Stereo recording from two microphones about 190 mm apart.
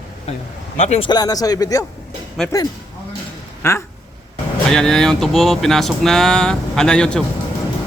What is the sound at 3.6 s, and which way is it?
Speech, 15° left (ahead or behind).